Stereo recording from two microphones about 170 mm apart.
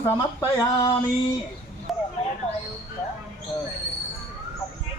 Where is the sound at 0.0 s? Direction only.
15° left (ahead or behind).